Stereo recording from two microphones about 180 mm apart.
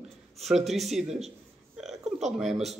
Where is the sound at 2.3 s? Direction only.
Centre (ahead or behind).